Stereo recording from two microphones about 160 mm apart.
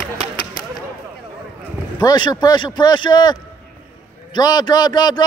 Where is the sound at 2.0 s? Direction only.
25° left (ahead or behind).